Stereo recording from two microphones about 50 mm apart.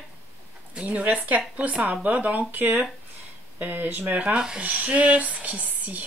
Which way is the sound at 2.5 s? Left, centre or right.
Right.